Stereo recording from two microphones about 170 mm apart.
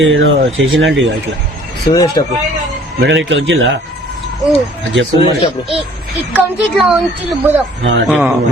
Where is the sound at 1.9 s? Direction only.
20° left (ahead or behind).